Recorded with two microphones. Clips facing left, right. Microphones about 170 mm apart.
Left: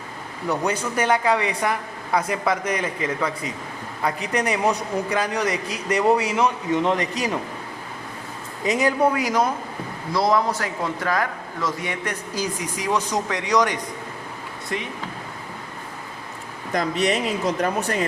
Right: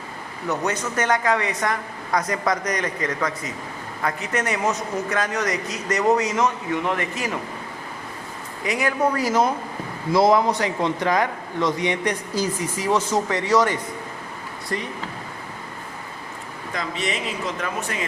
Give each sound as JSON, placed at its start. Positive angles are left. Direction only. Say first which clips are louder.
{"t": 0.4, "sound": "a woman's voice", "louder": "left 1 dB", "side_deg": 10}
{"t": 8.6, "sound": "speech", "louder": "left 3 dB", "side_deg": 20}
{"t": 10.1, "sound": "a man's voice", "louder": "right 4 dB", "side_deg": 0}
{"t": 11.6, "sound": "a woman's voice", "louder": "right 5 dB", "side_deg": 5}
{"t": 16.7, "sound": "speech", "louder": "left 6 dB", "side_deg": 40}